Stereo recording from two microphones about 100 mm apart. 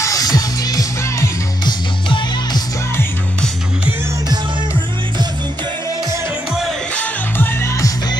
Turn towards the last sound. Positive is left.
turn(degrees=20)  # may be behind; listen again after turning